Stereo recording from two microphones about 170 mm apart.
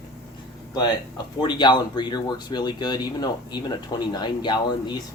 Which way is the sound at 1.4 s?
25° left (ahead or behind).